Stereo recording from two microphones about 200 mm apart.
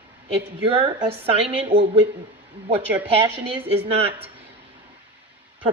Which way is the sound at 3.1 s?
30° right (ahead or behind).